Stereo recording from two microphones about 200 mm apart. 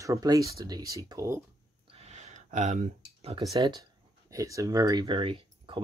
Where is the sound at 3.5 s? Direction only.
20° right (ahead or behind).